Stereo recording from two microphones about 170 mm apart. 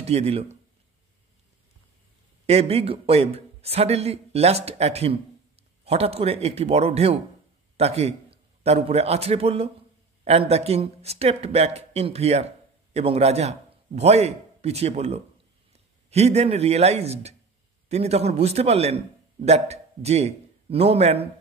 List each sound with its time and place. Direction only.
0.0 s speech: 35° right (ahead or behind)
2.4 s a man's voice: 35° right (ahead or behind)